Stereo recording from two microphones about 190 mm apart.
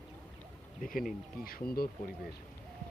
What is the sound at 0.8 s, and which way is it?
Speech, 45° left (ahead or behind).